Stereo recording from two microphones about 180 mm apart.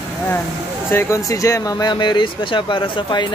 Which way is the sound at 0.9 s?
15° left (ahead or behind).